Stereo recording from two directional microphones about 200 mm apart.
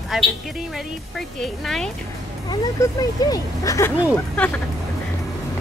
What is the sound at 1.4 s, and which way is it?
Speech, centre (ahead or behind).